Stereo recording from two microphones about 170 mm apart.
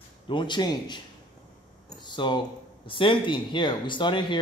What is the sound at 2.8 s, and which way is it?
Speech, 30° left (ahead or behind).